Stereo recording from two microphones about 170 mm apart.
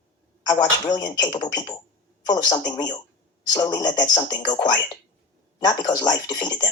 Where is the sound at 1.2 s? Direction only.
25° left (ahead or behind).